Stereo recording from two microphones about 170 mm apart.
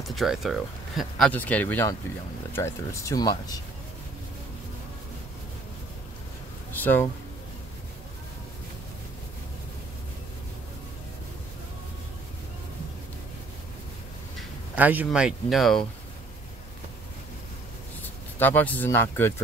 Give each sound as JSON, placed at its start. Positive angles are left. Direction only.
{"t": 0.1, "sound": "speech", "side_deg": 0}
{"t": 1.3, "sound": "speech", "side_deg": 10}
{"t": 6.7, "sound": "a sound", "side_deg": 10}
{"t": 14.8, "sound": "speech", "side_deg": -10}
{"t": 18.0, "sound": "speech", "side_deg": 10}